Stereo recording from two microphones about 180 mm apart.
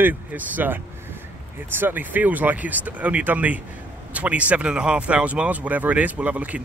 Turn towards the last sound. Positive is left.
turn(degrees=-10)  # may be behind; listen again after turning